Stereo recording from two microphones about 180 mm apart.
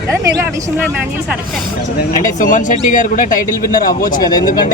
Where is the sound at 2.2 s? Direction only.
45° left (ahead or behind).